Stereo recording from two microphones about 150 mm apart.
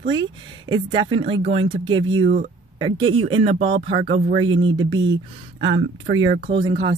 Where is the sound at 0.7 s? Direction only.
30° right (ahead or behind).